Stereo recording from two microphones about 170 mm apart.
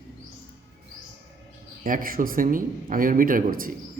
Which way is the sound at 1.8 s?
55° right (ahead or behind).